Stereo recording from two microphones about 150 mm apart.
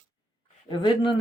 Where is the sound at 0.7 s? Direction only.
30° left (ahead or behind).